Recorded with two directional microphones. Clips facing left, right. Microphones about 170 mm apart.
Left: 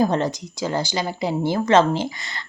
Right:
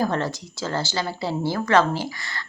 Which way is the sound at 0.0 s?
20° left (ahead or behind).